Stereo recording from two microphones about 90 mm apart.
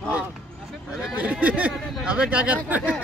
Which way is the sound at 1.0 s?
15° right (ahead or behind).